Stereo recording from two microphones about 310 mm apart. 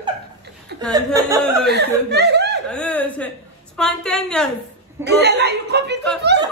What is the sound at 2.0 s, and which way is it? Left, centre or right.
Speech, right.